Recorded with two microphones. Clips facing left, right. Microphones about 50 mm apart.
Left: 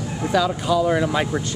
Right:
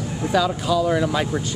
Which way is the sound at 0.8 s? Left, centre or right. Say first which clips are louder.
Left 1 dB; centre.